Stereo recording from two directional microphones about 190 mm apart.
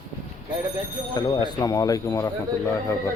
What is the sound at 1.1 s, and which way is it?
Speech, 20° left (ahead or behind).